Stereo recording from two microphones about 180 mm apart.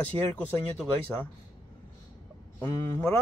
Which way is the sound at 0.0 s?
10° left (ahead or behind).